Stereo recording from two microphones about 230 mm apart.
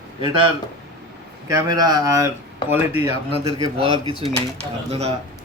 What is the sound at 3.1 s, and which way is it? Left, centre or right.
Speech, left.